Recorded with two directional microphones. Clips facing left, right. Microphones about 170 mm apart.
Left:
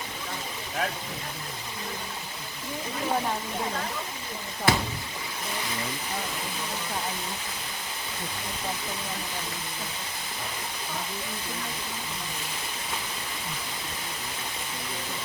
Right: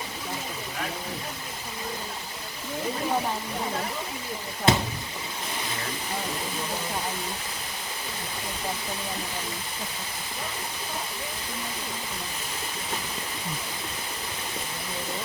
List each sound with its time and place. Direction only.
4.7 s speech: 20° right (ahead or behind)